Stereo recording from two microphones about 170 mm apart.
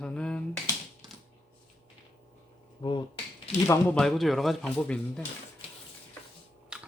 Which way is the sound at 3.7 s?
5° left (ahead or behind).